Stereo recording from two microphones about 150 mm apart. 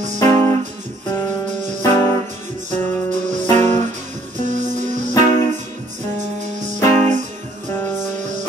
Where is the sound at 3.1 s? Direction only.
50° right (ahead or behind).